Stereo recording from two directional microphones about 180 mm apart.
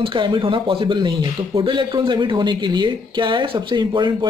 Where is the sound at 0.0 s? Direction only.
25° right (ahead or behind).